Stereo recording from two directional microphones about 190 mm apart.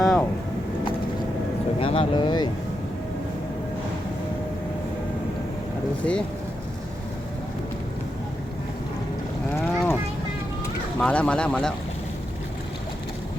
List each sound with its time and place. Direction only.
0.0 s a sound: 5° left (ahead or behind)
1.8 s speech: 30° left (ahead or behind)
6.0 s speech: 5° left (ahead or behind)
9.6 s livestock: 10° left (ahead or behind)
11.0 s speech: 5° left (ahead or behind)